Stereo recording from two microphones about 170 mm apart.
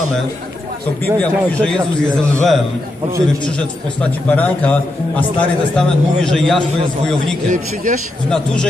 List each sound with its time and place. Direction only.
1.2 s a man's voice: 5° left (ahead or behind)
7.4 s a man's voice: 50° right (ahead or behind)
8.3 s a man's voice: 5° left (ahead or behind)